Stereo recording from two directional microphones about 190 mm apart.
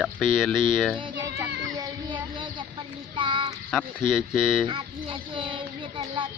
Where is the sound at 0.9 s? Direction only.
25° right (ahead or behind).